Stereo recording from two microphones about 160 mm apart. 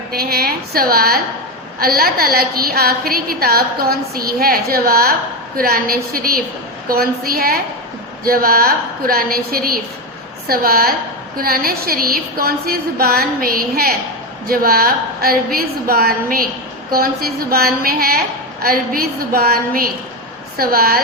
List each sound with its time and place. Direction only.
0.1 s a woman's voice: 70° right (ahead or behind)